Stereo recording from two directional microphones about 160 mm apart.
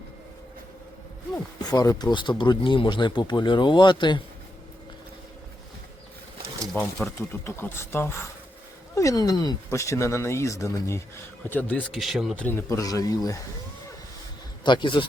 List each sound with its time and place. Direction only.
1.6 s speech: 20° left (ahead or behind)
6.8 s pigeon: 15° left (ahead or behind)
7.2 s speech: 15° left (ahead or behind)
11.9 s speech: centre (ahead or behind)
12.4 s speech: 10° left (ahead or behind)
14.6 s speech: 30° left (ahead or behind)